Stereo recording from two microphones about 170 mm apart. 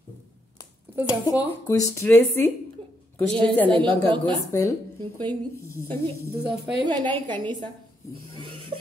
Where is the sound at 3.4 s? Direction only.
30° right (ahead or behind).